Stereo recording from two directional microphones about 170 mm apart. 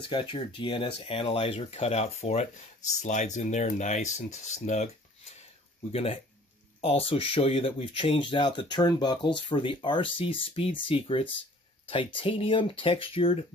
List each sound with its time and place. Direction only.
0.0 s speech: 30° left (ahead or behind)
5.9 s speech: 35° left (ahead or behind)